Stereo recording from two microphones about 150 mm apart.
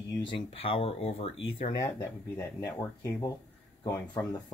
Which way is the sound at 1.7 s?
25° left (ahead or behind).